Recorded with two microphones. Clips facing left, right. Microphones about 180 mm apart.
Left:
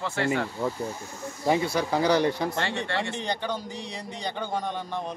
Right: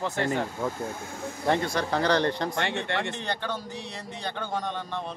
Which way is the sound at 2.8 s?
20° right (ahead or behind).